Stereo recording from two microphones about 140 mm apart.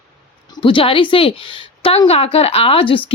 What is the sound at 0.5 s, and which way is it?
A woman's voice, 40° left (ahead or behind).